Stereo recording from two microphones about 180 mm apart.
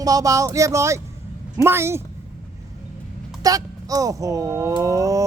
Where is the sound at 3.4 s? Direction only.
20° right (ahead or behind).